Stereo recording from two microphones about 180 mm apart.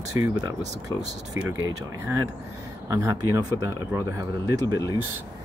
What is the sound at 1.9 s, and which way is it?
Speech, 15° right (ahead or behind).